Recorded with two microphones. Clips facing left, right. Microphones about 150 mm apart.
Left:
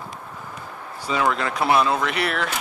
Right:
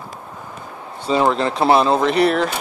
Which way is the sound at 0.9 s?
25° right (ahead or behind).